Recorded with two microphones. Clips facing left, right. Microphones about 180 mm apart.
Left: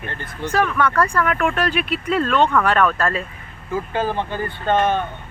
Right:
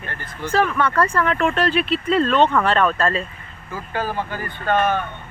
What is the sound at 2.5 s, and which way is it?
Speech, 20° right (ahead or behind).